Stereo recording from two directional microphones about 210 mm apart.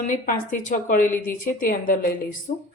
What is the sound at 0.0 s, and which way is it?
A woman's voice, 40° left (ahead or behind).